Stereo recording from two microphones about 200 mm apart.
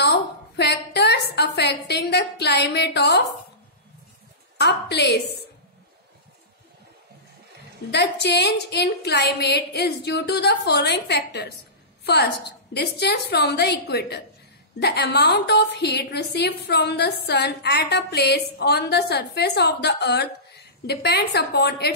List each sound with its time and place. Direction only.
0.0 s a sound: 55° left (ahead or behind)
4.6 s a woman's voice: 55° left (ahead or behind)
7.9 s a woman's voice: 55° left (ahead or behind)